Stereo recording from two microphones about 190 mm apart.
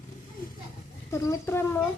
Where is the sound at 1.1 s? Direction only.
15° left (ahead or behind).